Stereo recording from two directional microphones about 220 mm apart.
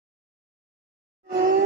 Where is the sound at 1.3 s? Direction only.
35° right (ahead or behind).